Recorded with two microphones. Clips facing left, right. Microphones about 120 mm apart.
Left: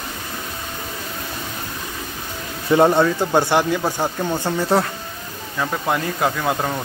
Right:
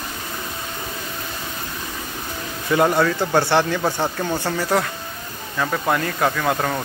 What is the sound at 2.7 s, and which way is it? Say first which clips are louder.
Speech: left 3 dB; 25° left (ahead or behind).